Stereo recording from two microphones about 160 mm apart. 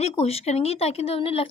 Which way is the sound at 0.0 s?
40° left (ahead or behind).